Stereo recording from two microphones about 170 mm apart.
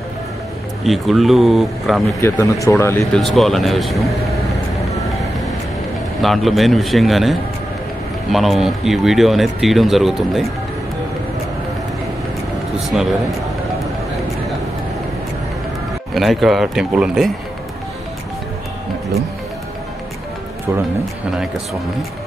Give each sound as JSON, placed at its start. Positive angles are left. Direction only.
{"t": 0.8, "sound": "speech", "side_deg": 0}
{"t": 2.1, "sound": "speech", "side_deg": 15}
{"t": 3.1, "sound": "speech", "side_deg": 0}
{"t": 6.2, "sound": "speech", "side_deg": 0}
{"t": 12.8, "sound": "speech", "side_deg": 0}
{"t": 16.2, "sound": "speech", "side_deg": 0}